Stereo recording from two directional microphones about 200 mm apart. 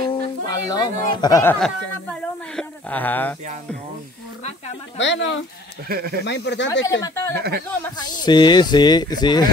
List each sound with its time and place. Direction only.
0.1 s music: 20° left (ahead or behind)
1.1 s speech: 20° left (ahead or behind)
4.9 s speech: 65° left (ahead or behind)
5.9 s speech: 50° right (ahead or behind)
6.2 s speech: 60° left (ahead or behind)
6.9 s speech: 15° left (ahead or behind)
7.3 s speech: 50° right (ahead or behind)
7.8 s speech: 20° left (ahead or behind)